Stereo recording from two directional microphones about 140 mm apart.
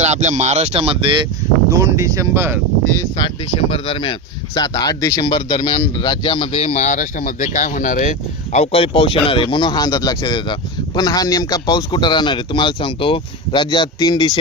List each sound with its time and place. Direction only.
0.0 s speech: 55° right (ahead or behind); by 1.3 s 35° right (ahead or behind)
1.7 s speech: 20° right (ahead or behind)
3.2 s speech: 40° left (ahead or behind)
4.5 s speech: 30° left (ahead or behind); by 8.1 s 70° left (ahead or behind)
8.5 s speech: 45° left (ahead or behind)